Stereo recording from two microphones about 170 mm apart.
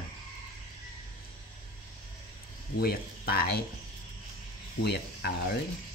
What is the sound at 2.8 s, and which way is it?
Speech, 65° left (ahead or behind).